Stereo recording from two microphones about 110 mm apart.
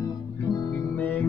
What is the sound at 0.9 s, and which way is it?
Music, 15° left (ahead or behind).